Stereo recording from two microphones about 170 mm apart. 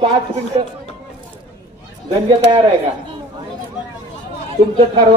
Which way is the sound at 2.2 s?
30° right (ahead or behind).